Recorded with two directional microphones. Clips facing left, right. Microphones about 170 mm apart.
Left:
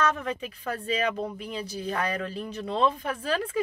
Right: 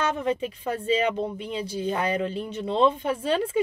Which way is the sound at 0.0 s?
30° right (ahead or behind).